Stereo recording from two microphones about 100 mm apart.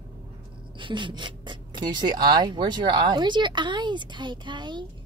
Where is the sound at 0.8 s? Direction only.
55° right (ahead or behind).